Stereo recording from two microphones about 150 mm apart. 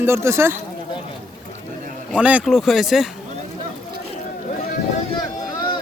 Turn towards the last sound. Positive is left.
turn(degrees=30)  # may be behind; listen again after turning